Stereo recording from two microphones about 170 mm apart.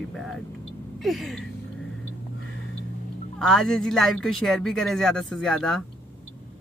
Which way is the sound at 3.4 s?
Centre (ahead or behind).